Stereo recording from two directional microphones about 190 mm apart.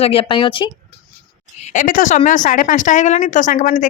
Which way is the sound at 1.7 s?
45° left (ahead or behind).